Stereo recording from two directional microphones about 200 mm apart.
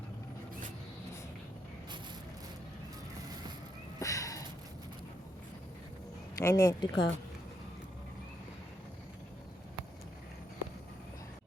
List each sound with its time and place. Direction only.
4.0 s sniff: 15° left (ahead or behind)
6.3 s speech: 15° left (ahead or behind)